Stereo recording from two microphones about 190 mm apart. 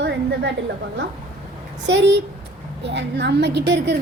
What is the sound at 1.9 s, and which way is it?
A woman's voice, 70° right (ahead or behind).